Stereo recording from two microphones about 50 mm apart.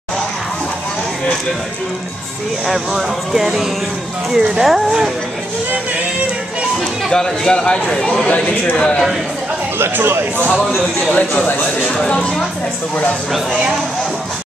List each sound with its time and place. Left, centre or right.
2.7 s speech: centre
7.1 s speech: centre
8.3 s a man's voice: left
8.7 s speech: centre
9.8 s speech: right
11.0 s speech: left
12.0 s speech: centre